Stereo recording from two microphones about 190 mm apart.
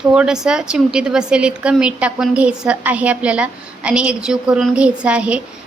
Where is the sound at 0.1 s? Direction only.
5° right (ahead or behind).